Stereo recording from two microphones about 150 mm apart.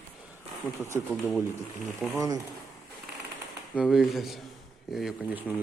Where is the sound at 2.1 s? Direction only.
25° right (ahead or behind).